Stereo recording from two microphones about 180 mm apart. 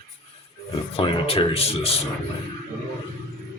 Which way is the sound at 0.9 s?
30° left (ahead or behind).